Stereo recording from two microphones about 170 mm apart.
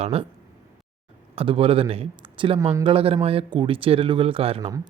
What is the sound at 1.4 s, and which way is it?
Speech, 35° right (ahead or behind).